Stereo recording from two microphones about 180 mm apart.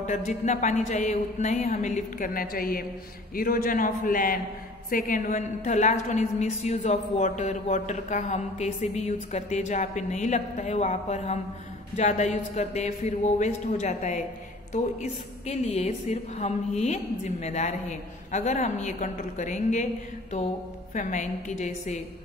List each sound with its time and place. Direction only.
0.0 s a woman's voice: 40° left (ahead or behind)
20.9 s a woman's voice: 45° left (ahead or behind)